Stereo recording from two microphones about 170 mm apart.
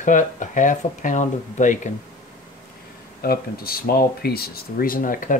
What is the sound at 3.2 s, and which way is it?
Speech, 60° left (ahead or behind).